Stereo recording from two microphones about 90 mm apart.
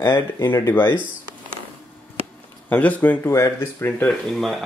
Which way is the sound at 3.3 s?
30° left (ahead or behind).